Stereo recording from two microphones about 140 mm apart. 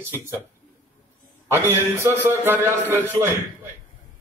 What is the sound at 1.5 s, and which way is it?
A man's voice, 20° right (ahead or behind).